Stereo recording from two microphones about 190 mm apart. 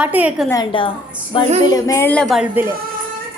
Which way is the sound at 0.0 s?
10° right (ahead or behind).